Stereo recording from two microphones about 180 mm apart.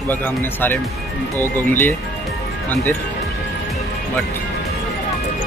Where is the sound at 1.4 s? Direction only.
10° left (ahead or behind).